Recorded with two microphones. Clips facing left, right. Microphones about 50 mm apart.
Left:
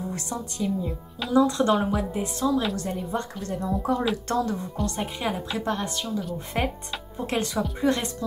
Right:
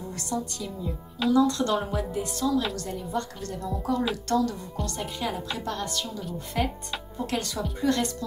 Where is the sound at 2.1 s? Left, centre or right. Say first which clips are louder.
Right 1 dB; left.